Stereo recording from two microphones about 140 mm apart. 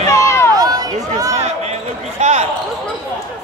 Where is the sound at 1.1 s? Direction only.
25° right (ahead or behind).